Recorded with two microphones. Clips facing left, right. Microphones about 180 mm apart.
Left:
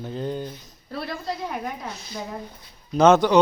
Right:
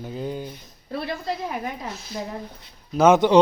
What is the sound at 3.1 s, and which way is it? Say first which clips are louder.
Speech: right 2 dB; 25° right (ahead or behind).